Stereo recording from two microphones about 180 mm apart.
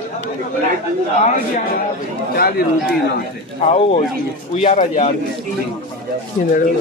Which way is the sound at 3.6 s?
35° left (ahead or behind).